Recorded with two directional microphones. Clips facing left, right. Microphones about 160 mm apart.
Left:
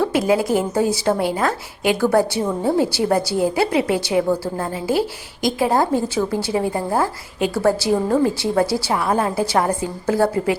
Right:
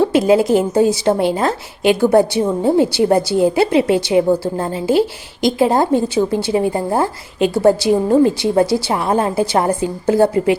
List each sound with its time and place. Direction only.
0.0 s a woman's voice: 25° right (ahead or behind)